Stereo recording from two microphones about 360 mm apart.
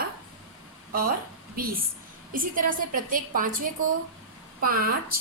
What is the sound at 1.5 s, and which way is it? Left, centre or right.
A woman's voice, right.